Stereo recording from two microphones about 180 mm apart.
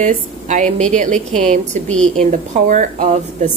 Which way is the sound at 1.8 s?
5° left (ahead or behind).